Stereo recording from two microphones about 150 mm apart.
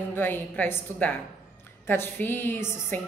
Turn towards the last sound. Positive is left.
turn(degrees=15)  # may be behind; listen again after turning